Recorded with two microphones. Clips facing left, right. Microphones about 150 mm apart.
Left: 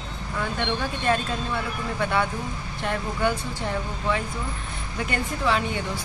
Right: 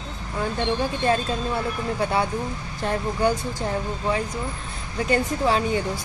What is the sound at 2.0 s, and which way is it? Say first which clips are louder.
Speech: right 1 dB; 35° right (ahead or behind).